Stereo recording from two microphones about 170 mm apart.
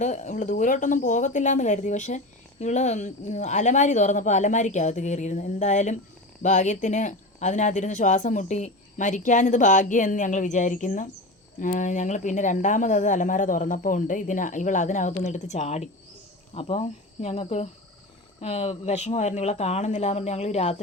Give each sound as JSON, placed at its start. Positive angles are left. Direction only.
{"t": 0.0, "sound": "speech", "side_deg": 45}